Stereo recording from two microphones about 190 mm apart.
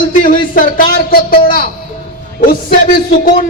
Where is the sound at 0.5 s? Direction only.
45° left (ahead or behind).